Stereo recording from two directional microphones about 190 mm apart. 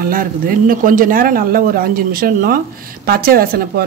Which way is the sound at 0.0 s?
50° right (ahead or behind).